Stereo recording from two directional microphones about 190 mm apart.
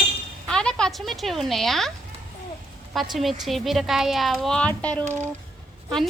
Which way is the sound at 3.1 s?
Centre (ahead or behind).